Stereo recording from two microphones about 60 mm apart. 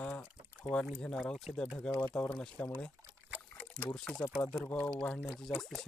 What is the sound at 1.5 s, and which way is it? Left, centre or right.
Speech, centre.